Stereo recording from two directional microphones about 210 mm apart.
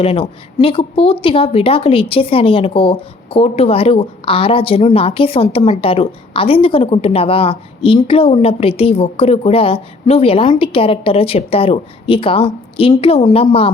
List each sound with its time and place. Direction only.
0.0 s speech: 25° left (ahead or behind)